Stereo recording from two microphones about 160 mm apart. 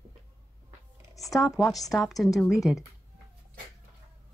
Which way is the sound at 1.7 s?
20° left (ahead or behind).